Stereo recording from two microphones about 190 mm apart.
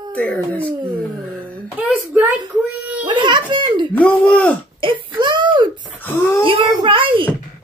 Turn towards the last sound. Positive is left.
turn(degrees=-25)  # may be behind; listen again after turning